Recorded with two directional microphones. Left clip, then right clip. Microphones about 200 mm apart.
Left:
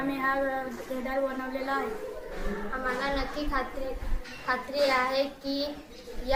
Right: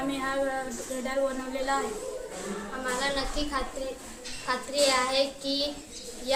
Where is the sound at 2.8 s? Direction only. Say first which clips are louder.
Right 1 dB; centre (ahead or behind).